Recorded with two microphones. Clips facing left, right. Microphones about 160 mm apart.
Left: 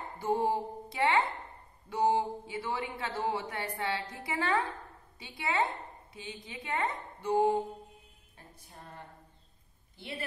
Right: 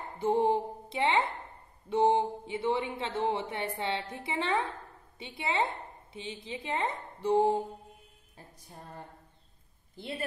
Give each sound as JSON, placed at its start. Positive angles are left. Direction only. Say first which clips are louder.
{"t": 0.2, "sound": "speech", "louder": "right 3 dB", "side_deg": -25}